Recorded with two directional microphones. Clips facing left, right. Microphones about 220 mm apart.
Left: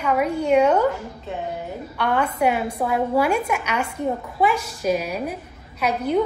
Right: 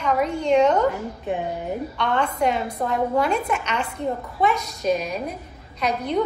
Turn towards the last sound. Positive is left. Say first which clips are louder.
# left 2 dB
turn(degrees=5)  # may be behind; listen again after turning